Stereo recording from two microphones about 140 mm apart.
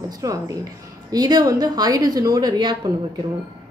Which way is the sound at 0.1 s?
25° right (ahead or behind).